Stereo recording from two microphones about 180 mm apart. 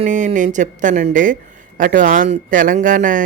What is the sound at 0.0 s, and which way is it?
Speech, 40° right (ahead or behind).